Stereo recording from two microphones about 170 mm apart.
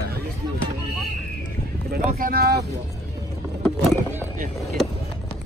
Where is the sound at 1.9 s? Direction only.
60° right (ahead or behind).